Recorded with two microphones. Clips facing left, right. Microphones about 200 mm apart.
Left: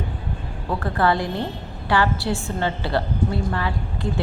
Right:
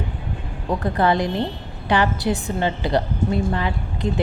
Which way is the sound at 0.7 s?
20° right (ahead or behind).